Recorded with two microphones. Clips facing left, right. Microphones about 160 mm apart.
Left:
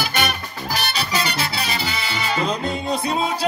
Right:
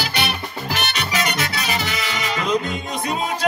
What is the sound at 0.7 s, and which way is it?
Music, 35° left (ahead or behind).